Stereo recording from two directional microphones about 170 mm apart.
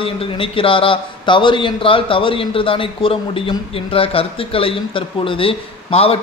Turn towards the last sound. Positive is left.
turn(degrees=35)  # may be behind; listen again after turning